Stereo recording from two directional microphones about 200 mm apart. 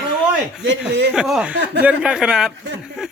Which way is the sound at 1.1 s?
5° right (ahead or behind).